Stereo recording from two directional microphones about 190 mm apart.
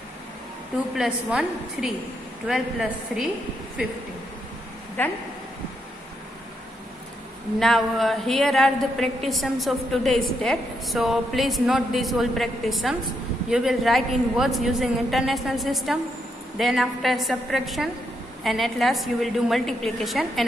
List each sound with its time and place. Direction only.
0.9 s a woman's voice: 5° right (ahead or behind)
5.0 s speech: 10° left (ahead or behind)
7.5 s a woman's voice: centre (ahead or behind)